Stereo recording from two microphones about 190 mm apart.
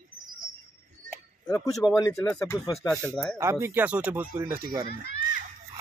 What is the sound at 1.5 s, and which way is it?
Speech, 15° left (ahead or behind).